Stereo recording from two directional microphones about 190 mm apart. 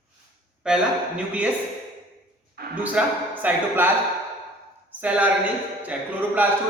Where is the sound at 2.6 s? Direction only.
55° right (ahead or behind).